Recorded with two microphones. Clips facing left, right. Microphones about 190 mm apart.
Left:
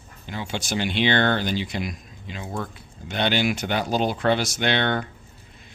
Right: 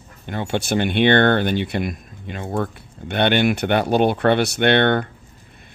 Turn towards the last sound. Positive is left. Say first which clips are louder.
# right 7 dB
turn(degrees=-60)  # may be behind; listen again after turning